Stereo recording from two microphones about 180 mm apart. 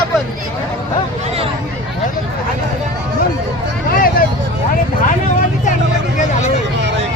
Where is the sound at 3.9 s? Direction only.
55° left (ahead or behind).